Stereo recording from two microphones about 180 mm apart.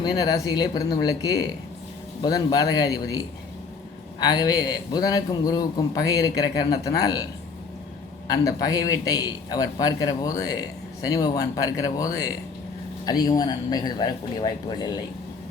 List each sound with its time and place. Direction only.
0.0 s a man's voice: 20° left (ahead or behind)
8.3 s a man's voice: 20° left (ahead or behind)